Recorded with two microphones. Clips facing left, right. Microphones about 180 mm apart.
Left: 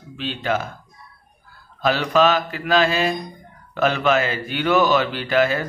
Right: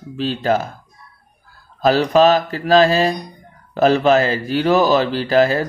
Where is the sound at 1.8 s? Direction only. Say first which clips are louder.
Right 5 dB; 35° right (ahead or behind).